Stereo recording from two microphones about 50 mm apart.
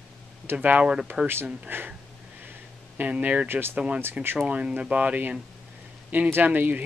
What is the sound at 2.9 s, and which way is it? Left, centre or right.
Speech, right.